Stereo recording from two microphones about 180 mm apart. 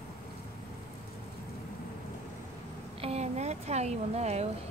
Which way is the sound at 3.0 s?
35° right (ahead or behind).